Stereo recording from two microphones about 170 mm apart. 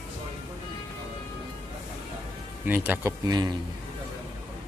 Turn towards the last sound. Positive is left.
turn(degrees=-25)  # may be behind; listen again after turning